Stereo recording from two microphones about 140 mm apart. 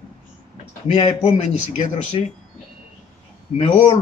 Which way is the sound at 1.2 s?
50° left (ahead or behind).